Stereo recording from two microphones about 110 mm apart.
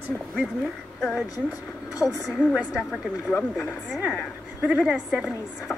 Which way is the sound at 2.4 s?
15° left (ahead or behind).